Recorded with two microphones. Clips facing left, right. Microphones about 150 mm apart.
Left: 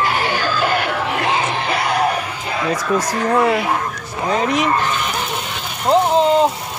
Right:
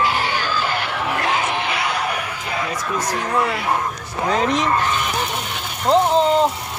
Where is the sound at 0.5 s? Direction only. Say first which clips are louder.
Left 4 dB; 50° left (ahead or behind).